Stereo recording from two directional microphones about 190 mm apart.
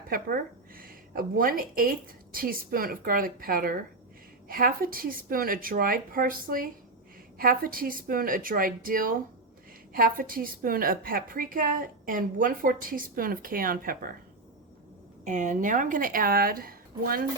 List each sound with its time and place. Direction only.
0.1 s a woman's voice: 50° right (ahead or behind)
15.2 s a woman's voice: 40° right (ahead or behind)